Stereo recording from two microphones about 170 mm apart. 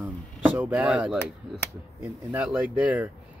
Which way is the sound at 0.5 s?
10° right (ahead or behind).